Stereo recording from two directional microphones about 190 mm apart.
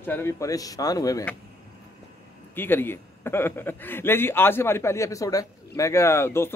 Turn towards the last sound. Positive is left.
turn(degrees=15)  # may be behind; listen again after turning